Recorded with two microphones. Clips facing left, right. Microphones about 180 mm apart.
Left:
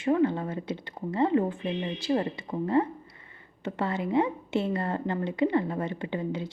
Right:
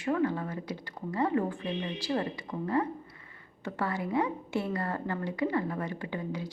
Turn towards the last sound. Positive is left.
turn(degrees=25)  # may be behind; listen again after turning